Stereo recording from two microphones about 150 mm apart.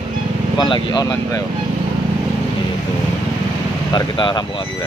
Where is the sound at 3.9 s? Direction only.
30° left (ahead or behind).